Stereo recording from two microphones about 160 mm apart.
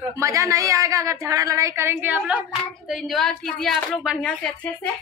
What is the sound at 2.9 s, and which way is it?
A woman's voice, centre (ahead or behind).